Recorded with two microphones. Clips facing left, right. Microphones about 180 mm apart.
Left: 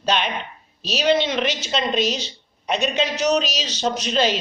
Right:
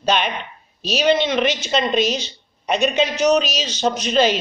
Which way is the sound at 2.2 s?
Centre (ahead or behind).